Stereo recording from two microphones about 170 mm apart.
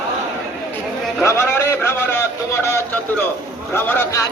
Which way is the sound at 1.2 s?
15° left (ahead or behind).